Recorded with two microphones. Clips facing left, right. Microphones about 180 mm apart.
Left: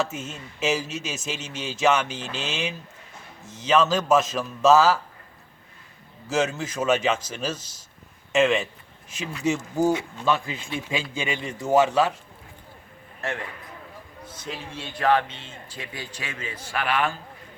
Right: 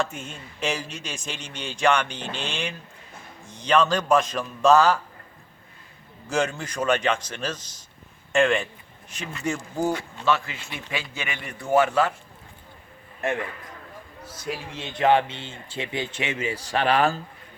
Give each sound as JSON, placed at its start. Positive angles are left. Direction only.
{"t": 0.0, "sound": "a man's voice", "side_deg": 5}
{"t": 6.2, "sound": "a man's voice", "side_deg": 5}
{"t": 9.9, "sound": "a man's voice", "side_deg": 20}
{"t": 13.2, "sound": "a man's voice", "side_deg": -20}